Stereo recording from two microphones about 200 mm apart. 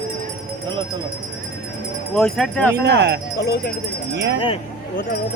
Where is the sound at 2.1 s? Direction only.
5° left (ahead or behind).